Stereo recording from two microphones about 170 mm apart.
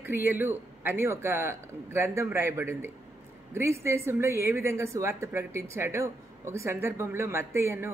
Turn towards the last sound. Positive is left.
turn(degrees=-15)  # may be behind; listen again after turning